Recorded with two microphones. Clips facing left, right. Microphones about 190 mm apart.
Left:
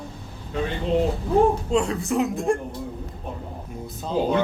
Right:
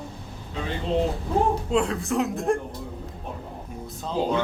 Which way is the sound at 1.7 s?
Centre (ahead or behind).